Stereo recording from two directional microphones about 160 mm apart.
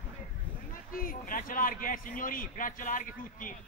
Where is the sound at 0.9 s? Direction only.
65° left (ahead or behind).